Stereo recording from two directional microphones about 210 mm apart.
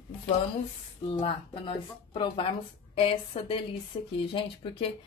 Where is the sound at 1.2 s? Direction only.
25° left (ahead or behind).